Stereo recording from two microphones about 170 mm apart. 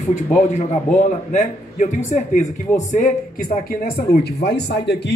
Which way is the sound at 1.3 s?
45° left (ahead or behind).